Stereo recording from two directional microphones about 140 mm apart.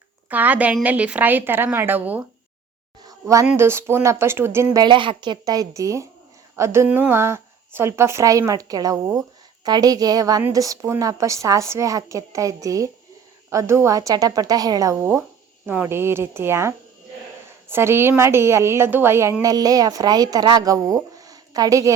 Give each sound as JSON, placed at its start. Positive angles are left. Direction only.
{"t": 0.3, "sound": "a woman's voice", "side_deg": -10}
{"t": 3.0, "sound": "a sound", "side_deg": -25}
{"t": 3.6, "sound": "a woman's voice", "side_deg": -20}
{"t": 4.8, "sound": "a woman's voice", "side_deg": -35}